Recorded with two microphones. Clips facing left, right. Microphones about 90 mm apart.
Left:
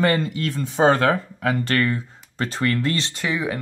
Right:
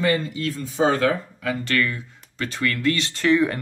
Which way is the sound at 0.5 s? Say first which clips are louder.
Left 3 dB; 55° left (ahead or behind).